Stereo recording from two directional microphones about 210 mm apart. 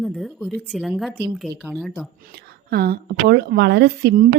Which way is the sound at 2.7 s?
45° right (ahead or behind).